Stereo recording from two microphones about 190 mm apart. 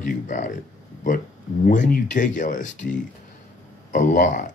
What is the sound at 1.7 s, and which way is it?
Speech, 45° left (ahead or behind).